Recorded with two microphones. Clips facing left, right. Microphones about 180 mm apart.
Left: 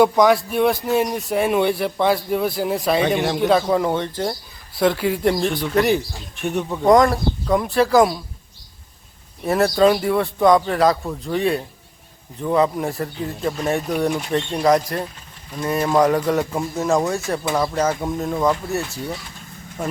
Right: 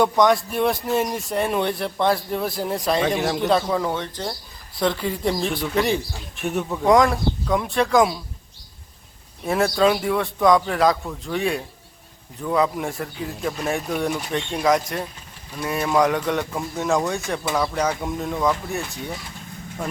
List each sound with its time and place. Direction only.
0.0 s speech: 5° left (ahead or behind)
3.7 s speech: 20° left (ahead or behind)
4.1 s speech: 5° left (ahead or behind)
9.5 s speech: centre (ahead or behind)